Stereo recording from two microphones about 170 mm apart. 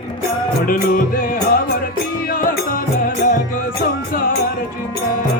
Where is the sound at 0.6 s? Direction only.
60° left (ahead or behind).